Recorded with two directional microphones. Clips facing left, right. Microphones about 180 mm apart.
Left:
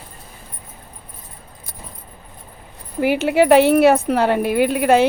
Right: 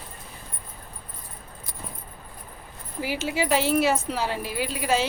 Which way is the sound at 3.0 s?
60° left (ahead or behind).